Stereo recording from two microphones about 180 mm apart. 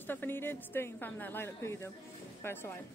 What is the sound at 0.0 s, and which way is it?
Speech, 10° left (ahead or behind).